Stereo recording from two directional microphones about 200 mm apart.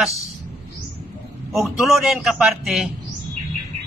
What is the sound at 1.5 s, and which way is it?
Speech, centre (ahead or behind).